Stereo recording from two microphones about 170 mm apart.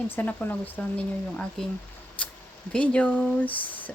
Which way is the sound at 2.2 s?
5° left (ahead or behind).